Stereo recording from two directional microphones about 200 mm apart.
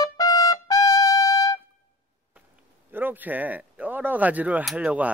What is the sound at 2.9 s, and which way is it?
Speech, 10° right (ahead or behind).